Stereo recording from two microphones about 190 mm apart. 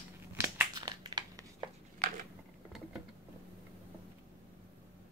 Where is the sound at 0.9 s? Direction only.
20° right (ahead or behind).